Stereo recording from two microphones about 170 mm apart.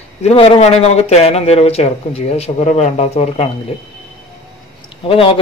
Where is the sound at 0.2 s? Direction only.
35° left (ahead or behind).